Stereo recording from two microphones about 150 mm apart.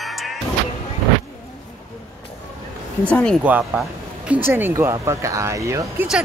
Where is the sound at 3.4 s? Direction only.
10° right (ahead or behind).